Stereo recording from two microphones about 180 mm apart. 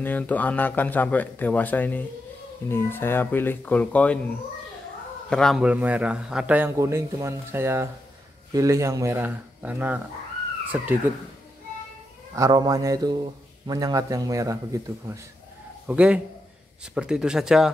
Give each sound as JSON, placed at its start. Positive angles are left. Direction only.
{"t": 0.0, "sound": "speech", "side_deg": 10}
{"t": 5.3, "sound": "a man's voice", "side_deg": 0}
{"t": 12.4, "sound": "a man's voice", "side_deg": -20}
{"t": 15.9, "sound": "a man's voice", "side_deg": -5}